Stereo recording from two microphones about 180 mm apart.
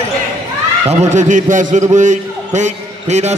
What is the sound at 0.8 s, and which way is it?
A man's voice, 40° right (ahead or behind).